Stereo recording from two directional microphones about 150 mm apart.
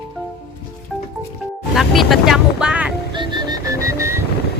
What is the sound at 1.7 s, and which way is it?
Speech, centre (ahead or behind).